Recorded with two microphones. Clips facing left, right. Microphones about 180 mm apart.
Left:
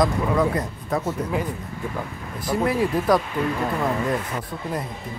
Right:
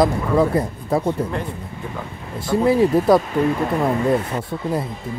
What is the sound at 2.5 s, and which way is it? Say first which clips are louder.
Speech: right 6 dB; 25° right (ahead or behind).